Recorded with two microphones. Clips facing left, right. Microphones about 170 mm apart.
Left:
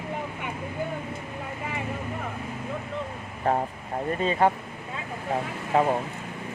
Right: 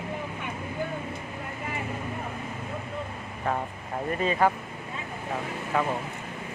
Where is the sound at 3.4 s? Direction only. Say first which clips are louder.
Left 5 dB; 35° left (ahead or behind).